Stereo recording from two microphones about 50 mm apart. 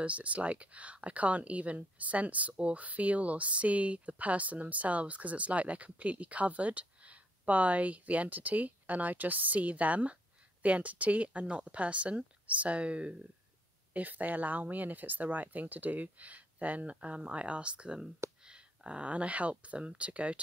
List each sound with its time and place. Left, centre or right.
0.0 s speech: right
13.9 s speech: right